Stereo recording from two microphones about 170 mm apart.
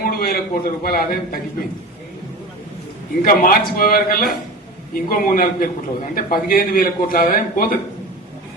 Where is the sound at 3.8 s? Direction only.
60° left (ahead or behind).